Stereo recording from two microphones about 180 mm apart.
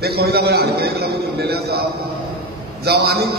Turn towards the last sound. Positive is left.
turn(degrees=-65)  # may be behind; listen again after turning